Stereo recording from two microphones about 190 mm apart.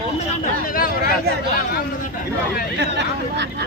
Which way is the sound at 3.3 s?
65° right (ahead or behind).